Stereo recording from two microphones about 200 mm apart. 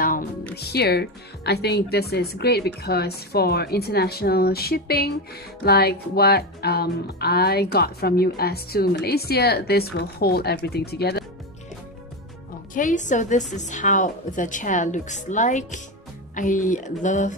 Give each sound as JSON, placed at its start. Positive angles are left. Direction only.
{"t": 0.6, "sound": "speech", "side_deg": 55}
{"t": 12.7, "sound": "a woman's voice", "side_deg": 40}